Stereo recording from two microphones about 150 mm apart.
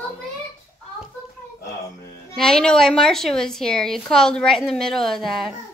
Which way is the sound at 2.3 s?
5° left (ahead or behind).